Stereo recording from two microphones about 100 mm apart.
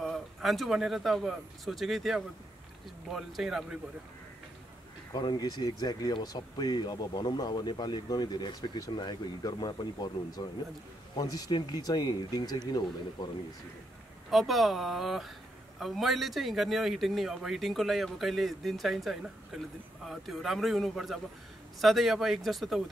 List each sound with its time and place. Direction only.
0.0 s a man's voice: centre (ahead or behind)
5.1 s speech: 45° left (ahead or behind)
14.3 s a man's voice: centre (ahead or behind)